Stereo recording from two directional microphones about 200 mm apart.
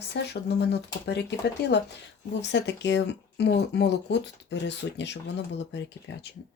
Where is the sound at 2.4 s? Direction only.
60° left (ahead or behind).